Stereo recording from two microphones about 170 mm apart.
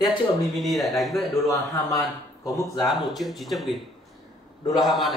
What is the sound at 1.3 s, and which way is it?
Speech, 20° left (ahead or behind).